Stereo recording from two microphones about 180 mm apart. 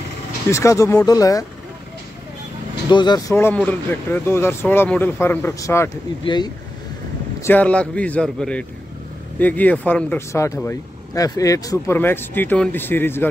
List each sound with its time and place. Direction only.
0.5 s speech: 15° left (ahead or behind)
2.9 s speech: 25° left (ahead or behind)
7.4 s speech: 10° left (ahead or behind)